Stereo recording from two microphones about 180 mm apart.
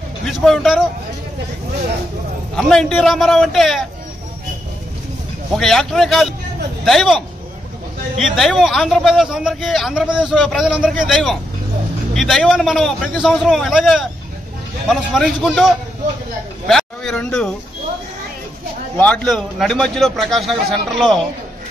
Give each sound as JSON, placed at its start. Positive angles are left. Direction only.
{"t": 0.2, "sound": "a man's voice", "side_deg": 0}
{"t": 2.5, "sound": "a man's voice", "side_deg": 0}
{"t": 5.6, "sound": "a man's voice", "side_deg": 0}
{"t": 18.9, "sound": "a man's voice", "side_deg": 10}